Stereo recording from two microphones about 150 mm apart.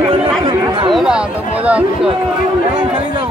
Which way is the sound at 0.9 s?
5° right (ahead or behind).